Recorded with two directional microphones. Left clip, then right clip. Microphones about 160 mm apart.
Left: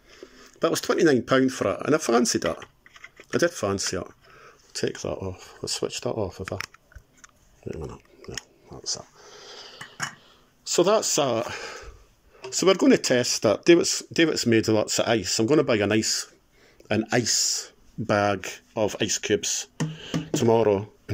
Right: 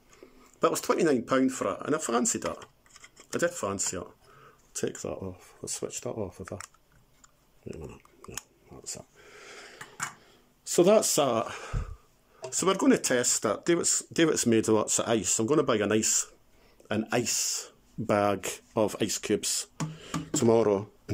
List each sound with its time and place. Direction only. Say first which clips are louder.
0.4 s speech: left 2 dB; 5° right (ahead or behind)
2.6 s a sound: left 6 dB; 35° right (ahead or behind)
3.3 s speech: left 5 dB; centre (ahead or behind)
4.7 s speech: left 5 dB; 15° right (ahead or behind)
8.2 s pig: left 5 dB; 10° right (ahead or behind)
9.3 s dishes: left 2 dB; 40° right (ahead or behind)
10.7 s speech: left 1 dB; 25° right (ahead or behind)
11.4 s speech: left 5 dB; 10° right (ahead or behind)